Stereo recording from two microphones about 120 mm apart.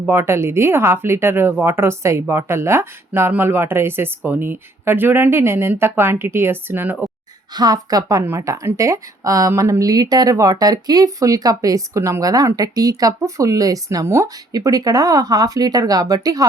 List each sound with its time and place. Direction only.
0.0 s speech: 20° right (ahead or behind)
7.5 s a woman's voice: 35° right (ahead or behind)